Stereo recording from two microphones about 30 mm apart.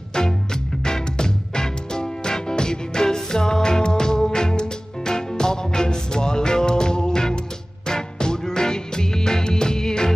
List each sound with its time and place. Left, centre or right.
0.8 s music: left